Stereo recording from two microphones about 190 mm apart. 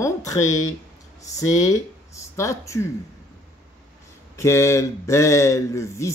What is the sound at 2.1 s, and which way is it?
Speech, 15° left (ahead or behind).